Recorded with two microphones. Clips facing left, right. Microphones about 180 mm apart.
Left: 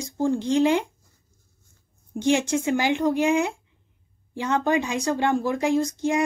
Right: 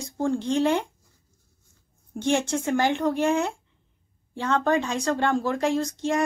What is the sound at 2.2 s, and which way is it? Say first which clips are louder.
Speech: left 2 dB; 15° left (ahead or behind).